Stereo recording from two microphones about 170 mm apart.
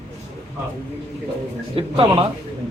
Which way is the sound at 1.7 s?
30° right (ahead or behind).